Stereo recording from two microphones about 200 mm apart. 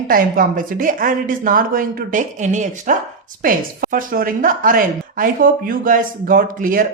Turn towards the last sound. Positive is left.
turn(degrees=-45)  # may be behind; listen again after turning